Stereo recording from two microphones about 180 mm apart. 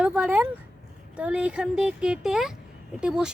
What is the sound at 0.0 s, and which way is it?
Speech, 10° right (ahead or behind).